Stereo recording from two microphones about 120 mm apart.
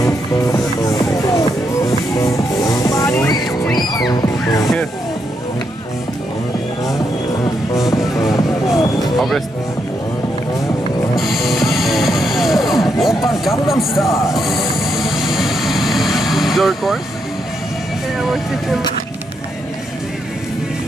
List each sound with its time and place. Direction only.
0.0 s music: 30° left (ahead or behind)
7.7 s music: 25° left (ahead or behind)
8.7 s a sound: 30° left (ahead or behind)
11.1 s music: centre (ahead or behind)
14.2 s train: centre (ahead or behind)